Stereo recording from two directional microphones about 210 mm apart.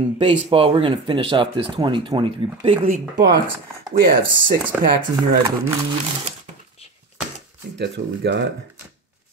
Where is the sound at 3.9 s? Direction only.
40° right (ahead or behind).